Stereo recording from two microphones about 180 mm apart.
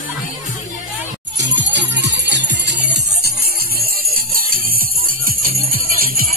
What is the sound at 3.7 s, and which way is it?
Jingle bell, 55° right (ahead or behind).